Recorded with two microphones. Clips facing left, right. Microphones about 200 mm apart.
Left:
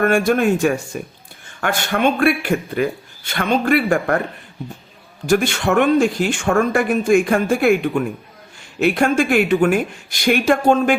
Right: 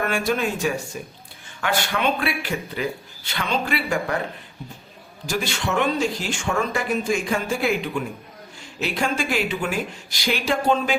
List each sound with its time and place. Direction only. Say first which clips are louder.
0.0 s speech: left 8 dB; 50° left (ahead or behind)
5.2 s speech: left 9 dB; 55° left (ahead or behind)